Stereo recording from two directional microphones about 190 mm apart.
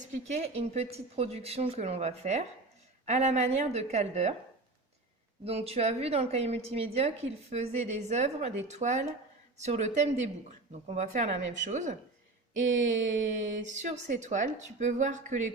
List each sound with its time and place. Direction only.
0.0 s a woman's voice: 40° right (ahead or behind)
5.5 s a woman's voice: 30° right (ahead or behind)